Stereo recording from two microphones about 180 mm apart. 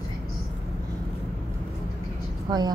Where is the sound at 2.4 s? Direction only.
20° right (ahead or behind).